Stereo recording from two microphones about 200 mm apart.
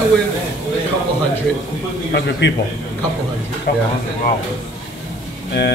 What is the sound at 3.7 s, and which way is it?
Speech, 50° left (ahead or behind).